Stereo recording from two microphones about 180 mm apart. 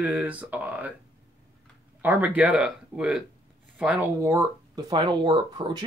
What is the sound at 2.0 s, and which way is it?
Speech, 10° right (ahead or behind).